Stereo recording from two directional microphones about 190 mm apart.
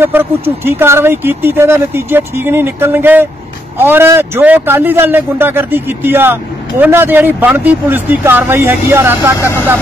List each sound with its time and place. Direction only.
0.0 s speech: 10° right (ahead or behind)